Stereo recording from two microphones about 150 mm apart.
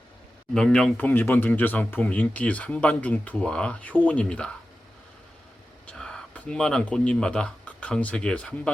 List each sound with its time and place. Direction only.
0.5 s speech: 5° left (ahead or behind)
5.8 s speech: 5° left (ahead or behind)